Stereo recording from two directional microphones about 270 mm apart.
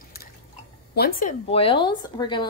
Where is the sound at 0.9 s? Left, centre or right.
Left.